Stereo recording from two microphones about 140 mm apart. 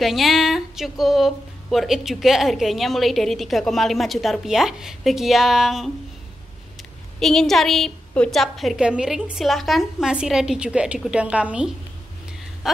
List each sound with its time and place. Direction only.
0.0 s speech: centre (ahead or behind)